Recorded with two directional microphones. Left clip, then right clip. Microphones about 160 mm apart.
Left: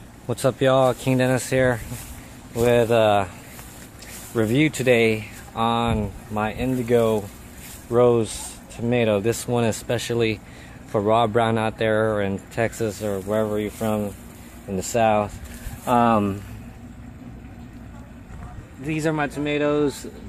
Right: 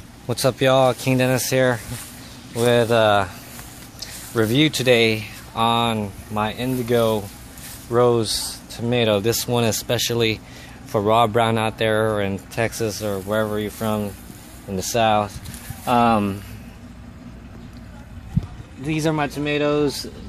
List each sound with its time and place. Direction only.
0.3 s speech: 5° right (ahead or behind)
18.9 s speech: 20° right (ahead or behind)